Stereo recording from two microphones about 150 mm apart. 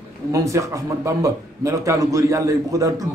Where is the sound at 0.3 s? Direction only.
20° right (ahead or behind).